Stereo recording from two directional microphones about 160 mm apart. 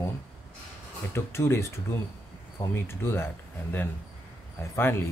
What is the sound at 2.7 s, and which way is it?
Speech, 15° left (ahead or behind).